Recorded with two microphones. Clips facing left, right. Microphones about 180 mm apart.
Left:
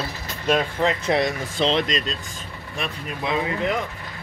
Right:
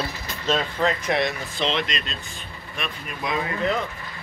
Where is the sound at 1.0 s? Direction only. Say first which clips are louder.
Left 2 dB; 35° left (ahead or behind).